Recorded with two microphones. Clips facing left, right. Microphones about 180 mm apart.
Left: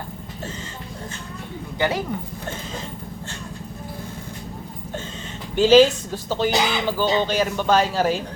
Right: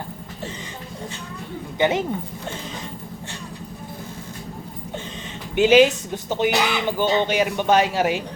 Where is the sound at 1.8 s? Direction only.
20° right (ahead or behind).